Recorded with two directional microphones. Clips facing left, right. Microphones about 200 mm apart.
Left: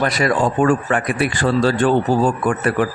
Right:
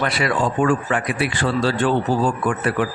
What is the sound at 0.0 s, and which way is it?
A man's voice, 40° left (ahead or behind).